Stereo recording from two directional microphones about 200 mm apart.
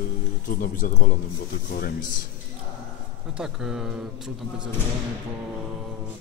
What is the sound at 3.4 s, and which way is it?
Speech, centre (ahead or behind).